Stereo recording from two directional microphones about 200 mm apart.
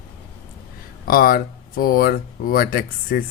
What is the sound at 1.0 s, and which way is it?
Speech, 45° left (ahead or behind).